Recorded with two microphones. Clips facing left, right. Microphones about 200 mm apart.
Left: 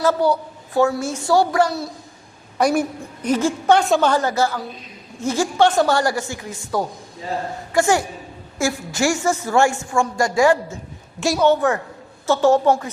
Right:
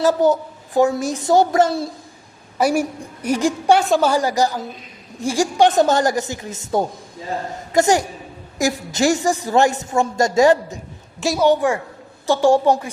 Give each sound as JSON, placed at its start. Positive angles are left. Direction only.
{"t": 0.0, "sound": "a woman's voice", "side_deg": -15}
{"t": 2.6, "sound": "a woman's voice", "side_deg": -10}
{"t": 11.2, "sound": "a woman's voice", "side_deg": 0}
{"t": 11.4, "sound": "a woman's voice", "side_deg": -10}